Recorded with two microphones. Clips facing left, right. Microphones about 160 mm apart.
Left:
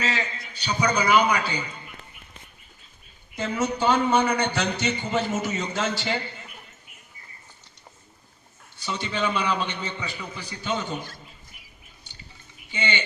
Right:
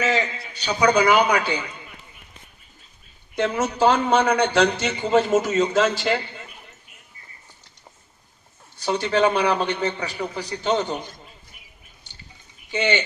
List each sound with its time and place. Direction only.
0.2 s a man's voice: 75° right (ahead or behind)
3.3 s a man's voice: 85° right
8.8 s a man's voice: 65° right (ahead or behind); by 10.9 s 80° right